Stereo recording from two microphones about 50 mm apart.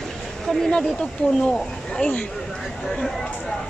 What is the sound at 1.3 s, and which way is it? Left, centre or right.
Speech, centre.